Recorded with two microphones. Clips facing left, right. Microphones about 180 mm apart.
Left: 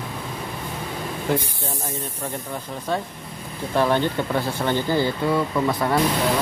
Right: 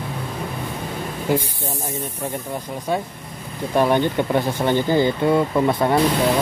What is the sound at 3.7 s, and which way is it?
Speech, 15° right (ahead or behind).